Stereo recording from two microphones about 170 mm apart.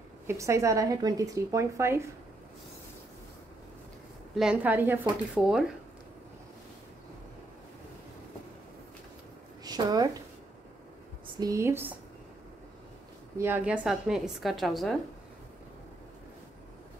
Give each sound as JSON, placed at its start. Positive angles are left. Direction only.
{"t": 0.3, "sound": "a woman's voice", "side_deg": -15}
{"t": 4.4, "sound": "a woman's voice", "side_deg": -5}
{"t": 9.7, "sound": "a woman's voice", "side_deg": -25}
{"t": 11.3, "sound": "speech", "side_deg": -20}
{"t": 13.4, "sound": "a woman's voice", "side_deg": -10}